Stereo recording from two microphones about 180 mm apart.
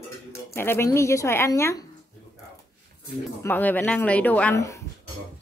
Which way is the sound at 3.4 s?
10° left (ahead or behind).